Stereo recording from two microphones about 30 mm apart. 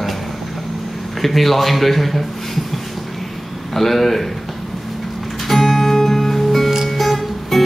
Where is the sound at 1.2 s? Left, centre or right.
Centre.